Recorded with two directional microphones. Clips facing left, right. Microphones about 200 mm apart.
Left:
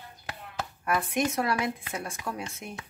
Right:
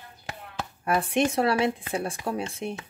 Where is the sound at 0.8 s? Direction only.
30° right (ahead or behind).